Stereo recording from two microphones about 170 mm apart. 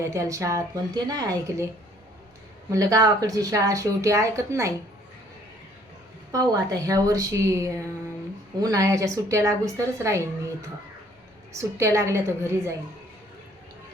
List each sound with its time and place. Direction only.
0.0 s speech: 20° right (ahead or behind)
2.6 s speech: 20° right (ahead or behind)
6.3 s speech: 20° right (ahead or behind)
11.5 s a woman's voice: 15° right (ahead or behind)